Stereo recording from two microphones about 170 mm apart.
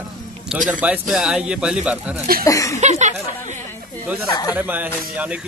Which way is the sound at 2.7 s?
45° right (ahead or behind).